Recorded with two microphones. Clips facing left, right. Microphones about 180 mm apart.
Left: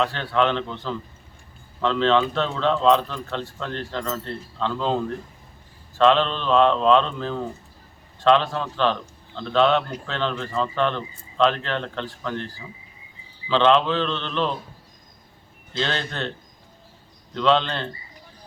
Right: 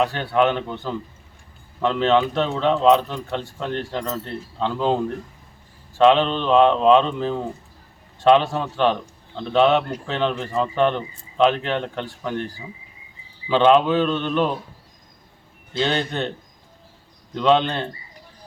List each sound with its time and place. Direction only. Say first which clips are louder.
0.0 s a man's voice: right 3 dB; 15° right (ahead or behind)
13.5 s a man's voice: right 3 dB; 10° right (ahead or behind)
15.7 s a man's voice: right 4 dB; 15° right (ahead or behind)
17.3 s a man's voice: right 2 dB; 15° right (ahead or behind)